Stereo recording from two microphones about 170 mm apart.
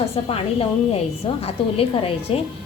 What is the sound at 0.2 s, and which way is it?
A woman's voice, 35° left (ahead or behind).